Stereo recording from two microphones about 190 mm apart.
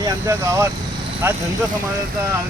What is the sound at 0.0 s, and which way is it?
Speech, 15° right (ahead or behind).